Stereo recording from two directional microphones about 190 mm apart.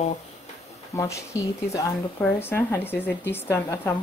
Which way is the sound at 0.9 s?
15° left (ahead or behind).